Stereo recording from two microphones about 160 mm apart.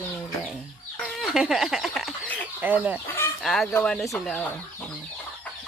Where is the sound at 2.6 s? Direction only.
10° right (ahead or behind).